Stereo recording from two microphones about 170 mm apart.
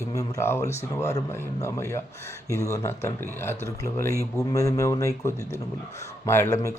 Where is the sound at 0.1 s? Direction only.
20° left (ahead or behind).